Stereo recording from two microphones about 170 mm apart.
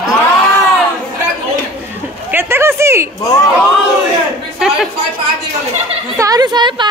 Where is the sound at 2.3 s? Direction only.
15° right (ahead or behind).